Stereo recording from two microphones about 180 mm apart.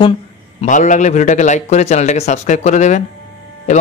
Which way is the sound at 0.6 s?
45° left (ahead or behind).